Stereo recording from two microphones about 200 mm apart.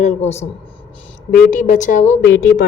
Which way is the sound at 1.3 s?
40° left (ahead or behind).